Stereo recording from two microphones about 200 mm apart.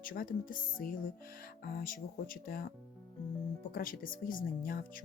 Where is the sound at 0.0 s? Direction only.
45° left (ahead or behind).